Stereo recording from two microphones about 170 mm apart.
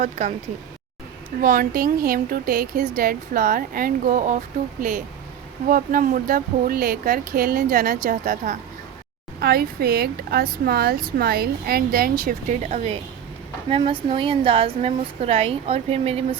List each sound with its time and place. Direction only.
0.0 s speech: 50° right (ahead or behind)
1.4 s speech: 55° right (ahead or behind)
9.4 s a woman's voice: 65° right (ahead or behind); by 16.4 s 35° right (ahead or behind)